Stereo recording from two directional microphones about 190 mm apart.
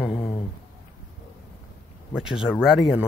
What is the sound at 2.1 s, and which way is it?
Speech, 5° right (ahead or behind).